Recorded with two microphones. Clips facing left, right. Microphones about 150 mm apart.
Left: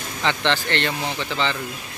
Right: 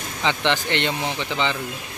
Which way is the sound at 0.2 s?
15° right (ahead or behind).